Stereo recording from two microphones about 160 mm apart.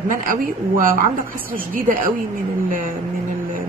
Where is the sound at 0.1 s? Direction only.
55° right (ahead or behind).